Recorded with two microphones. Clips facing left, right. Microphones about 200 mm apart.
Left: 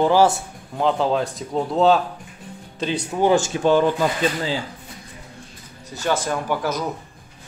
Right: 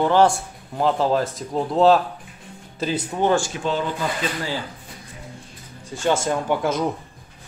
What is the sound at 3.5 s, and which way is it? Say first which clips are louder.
Speech: left 6 dB; 30° left (ahead or behind).